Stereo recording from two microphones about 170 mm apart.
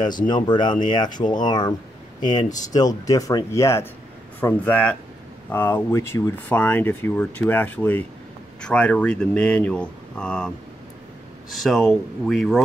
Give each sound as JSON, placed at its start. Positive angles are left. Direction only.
{"t": 0.5, "sound": "speech", "side_deg": 25}
{"t": 11.5, "sound": "speech", "side_deg": 0}